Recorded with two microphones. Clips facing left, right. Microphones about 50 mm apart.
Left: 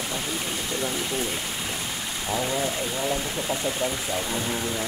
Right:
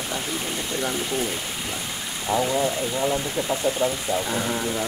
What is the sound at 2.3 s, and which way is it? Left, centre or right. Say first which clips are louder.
Speech: right 5 dB; right.